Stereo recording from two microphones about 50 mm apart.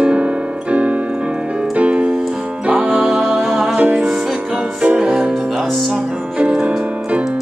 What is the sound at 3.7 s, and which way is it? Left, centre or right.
Music, right.